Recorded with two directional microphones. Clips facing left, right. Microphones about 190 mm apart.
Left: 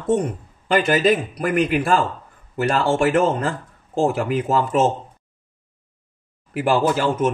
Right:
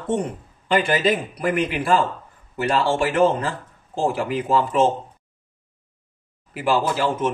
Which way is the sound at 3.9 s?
45° left (ahead or behind).